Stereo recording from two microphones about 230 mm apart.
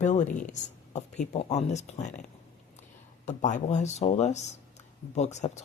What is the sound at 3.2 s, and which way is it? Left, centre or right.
Speech, left.